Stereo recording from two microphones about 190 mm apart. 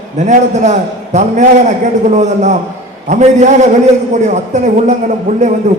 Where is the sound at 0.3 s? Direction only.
40° right (ahead or behind).